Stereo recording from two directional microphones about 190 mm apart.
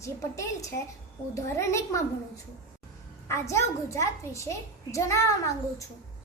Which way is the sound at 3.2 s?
15° left (ahead or behind).